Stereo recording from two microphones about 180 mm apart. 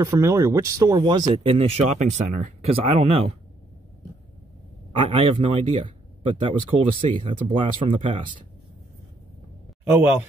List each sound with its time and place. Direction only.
0.0 s speech: 15° right (ahead or behind); by 3.3 s 30° right (ahead or behind)
4.9 s speech: 35° right (ahead or behind)